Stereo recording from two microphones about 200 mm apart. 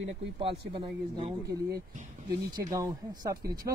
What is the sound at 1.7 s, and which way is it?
Speech, 40° right (ahead or behind).